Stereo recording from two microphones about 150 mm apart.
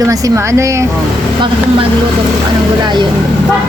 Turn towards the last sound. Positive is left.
turn(degrees=-30)  # may be behind; listen again after turning